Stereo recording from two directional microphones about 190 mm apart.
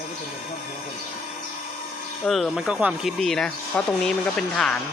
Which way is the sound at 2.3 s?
Centre (ahead or behind).